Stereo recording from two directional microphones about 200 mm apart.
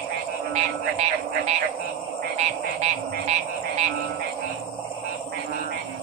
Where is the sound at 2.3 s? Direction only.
35° right (ahead or behind).